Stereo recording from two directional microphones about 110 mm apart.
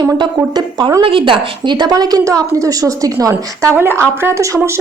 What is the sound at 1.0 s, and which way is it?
A woman's voice, 50° right (ahead or behind).